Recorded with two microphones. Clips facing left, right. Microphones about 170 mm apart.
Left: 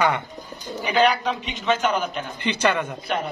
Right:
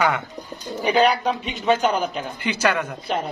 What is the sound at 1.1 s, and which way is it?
Speech, 35° right (ahead or behind).